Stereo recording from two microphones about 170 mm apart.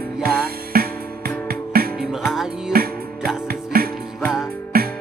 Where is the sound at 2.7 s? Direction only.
60° right (ahead or behind).